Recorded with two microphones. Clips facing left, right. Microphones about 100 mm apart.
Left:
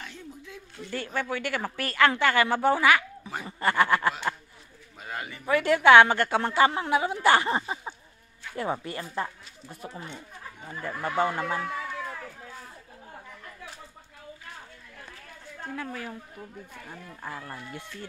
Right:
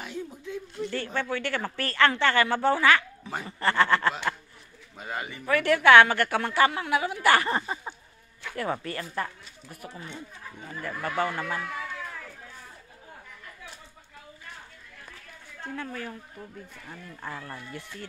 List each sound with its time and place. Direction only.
0.5 s speech: 5° left (ahead or behind)
4.9 s bird: centre (ahead or behind)
5.4 s a woman's voice: 15° left (ahead or behind)
8.4 s a sound: 80° right
8.8 s a woman's voice: 20° left (ahead or behind)
15.6 s speech: 5° left (ahead or behind)